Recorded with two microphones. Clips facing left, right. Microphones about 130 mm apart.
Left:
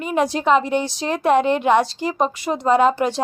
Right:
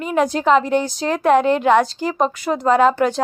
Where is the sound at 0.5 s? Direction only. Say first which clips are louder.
Right 2 dB; 15° left (ahead or behind).